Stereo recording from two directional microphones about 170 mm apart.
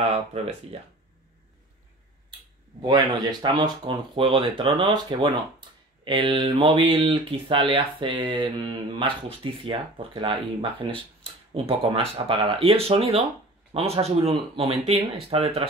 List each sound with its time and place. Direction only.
0.1 s speech: 35° right (ahead or behind)
2.8 s speech: 25° right (ahead or behind)